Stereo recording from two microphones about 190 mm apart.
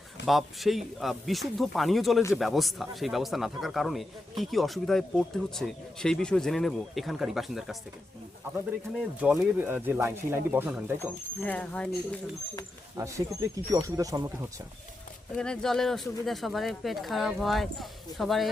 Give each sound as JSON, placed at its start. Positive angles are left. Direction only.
{"t": 0.3, "sound": "speech", "side_deg": 0}
{"t": 9.0, "sound": "speech", "side_deg": -5}
{"t": 11.0, "sound": "speech", "side_deg": 10}
{"t": 13.0, "sound": "speech", "side_deg": -15}
{"t": 15.4, "sound": "speech", "side_deg": 5}